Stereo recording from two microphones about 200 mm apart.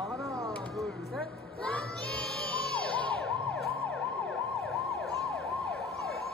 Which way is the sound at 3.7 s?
5° left (ahead or behind).